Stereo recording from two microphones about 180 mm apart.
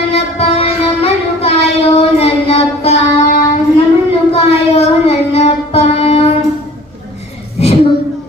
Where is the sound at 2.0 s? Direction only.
35° left (ahead or behind).